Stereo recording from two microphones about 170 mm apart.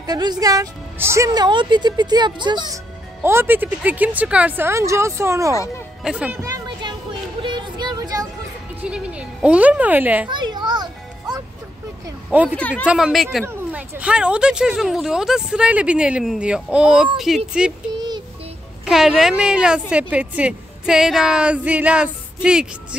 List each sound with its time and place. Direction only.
0.0 s a woman's voice: 25° right (ahead or behind)
3.2 s speech: 15° right (ahead or behind)
6.4 s music: 20° right (ahead or behind)
8.8 s speech: 5° right (ahead or behind)
10.3 s children playing: 25° right (ahead or behind)
12.3 s speech: 5° right (ahead or behind)
12.5 s speech: 10° left (ahead or behind)
12.8 s speech: 5° right (ahead or behind)
13.5 s speech: 10° right (ahead or behind)
17.9 s child singing: 25° right (ahead or behind)
18.9 s speech: centre (ahead or behind)